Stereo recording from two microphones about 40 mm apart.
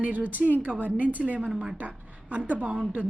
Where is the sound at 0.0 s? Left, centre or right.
Right.